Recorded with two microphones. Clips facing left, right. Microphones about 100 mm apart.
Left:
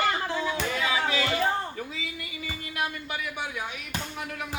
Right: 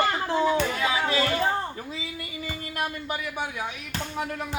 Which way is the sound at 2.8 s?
35° right (ahead or behind).